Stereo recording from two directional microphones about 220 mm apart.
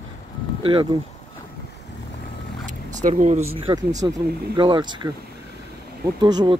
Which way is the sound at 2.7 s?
35° right (ahead or behind).